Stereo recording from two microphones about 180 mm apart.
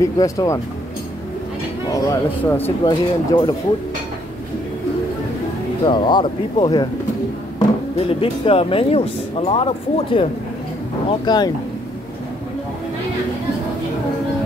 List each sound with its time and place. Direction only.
0.0 s speech: 20° left (ahead or behind)
1.9 s speech: 15° left (ahead or behind)
5.9 s speech: 25° left (ahead or behind)